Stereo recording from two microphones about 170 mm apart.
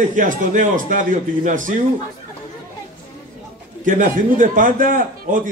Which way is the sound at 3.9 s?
50° right (ahead or behind).